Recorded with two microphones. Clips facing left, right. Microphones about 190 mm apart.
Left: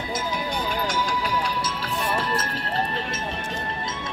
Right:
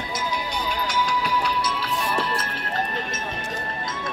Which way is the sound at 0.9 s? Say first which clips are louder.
Right 1 dB; 45° left (ahead or behind).